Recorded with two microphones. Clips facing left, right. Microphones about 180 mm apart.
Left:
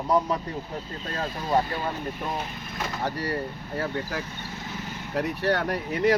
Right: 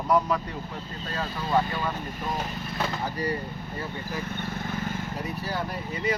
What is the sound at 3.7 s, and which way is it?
Speech, 75° left (ahead or behind).